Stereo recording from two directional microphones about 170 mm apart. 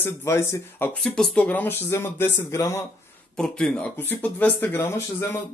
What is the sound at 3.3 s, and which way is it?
A man's voice, 5° left (ahead or behind).